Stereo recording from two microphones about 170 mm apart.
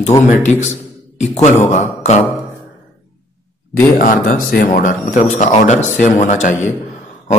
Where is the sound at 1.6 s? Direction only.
40° left (ahead or behind).